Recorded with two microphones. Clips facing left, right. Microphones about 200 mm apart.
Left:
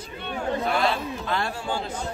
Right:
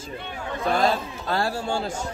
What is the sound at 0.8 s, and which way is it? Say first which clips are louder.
Speech: right 2 dB; 40° right (ahead or behind).